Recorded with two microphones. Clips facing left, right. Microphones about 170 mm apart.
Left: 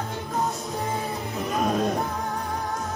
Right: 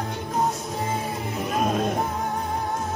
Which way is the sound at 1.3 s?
20° right (ahead or behind).